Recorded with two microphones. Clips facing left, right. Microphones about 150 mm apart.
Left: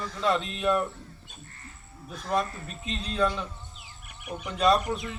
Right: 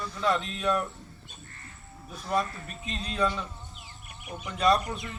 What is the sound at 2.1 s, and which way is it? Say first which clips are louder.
Speech: left 1 dB; centre (ahead or behind).